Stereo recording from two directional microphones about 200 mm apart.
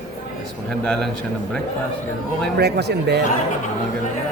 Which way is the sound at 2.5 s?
55° right (ahead or behind).